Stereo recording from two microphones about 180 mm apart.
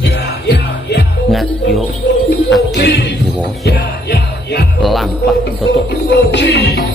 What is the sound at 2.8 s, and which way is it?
Music, 75° left (ahead or behind).